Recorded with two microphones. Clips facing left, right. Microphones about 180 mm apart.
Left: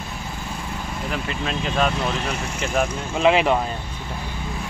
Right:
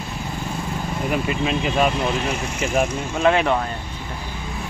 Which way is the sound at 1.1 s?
10° right (ahead or behind).